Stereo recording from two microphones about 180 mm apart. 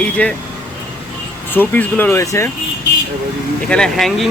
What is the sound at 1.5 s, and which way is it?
Speech, 10° left (ahead or behind).